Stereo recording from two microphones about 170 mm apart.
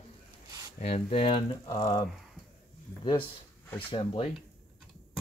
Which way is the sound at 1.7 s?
20° left (ahead or behind).